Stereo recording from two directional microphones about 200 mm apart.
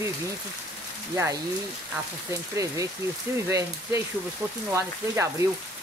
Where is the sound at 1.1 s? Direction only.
15° right (ahead or behind).